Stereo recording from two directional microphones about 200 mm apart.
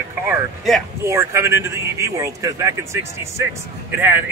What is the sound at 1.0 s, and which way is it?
A man's voice, 15° right (ahead or behind).